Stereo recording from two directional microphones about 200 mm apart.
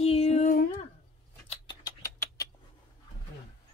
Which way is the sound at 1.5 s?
20° left (ahead or behind).